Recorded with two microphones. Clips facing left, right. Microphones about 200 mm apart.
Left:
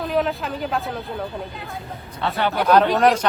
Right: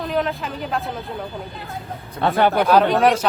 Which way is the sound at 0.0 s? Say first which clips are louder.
Left 1 dB; centre (ahead or behind).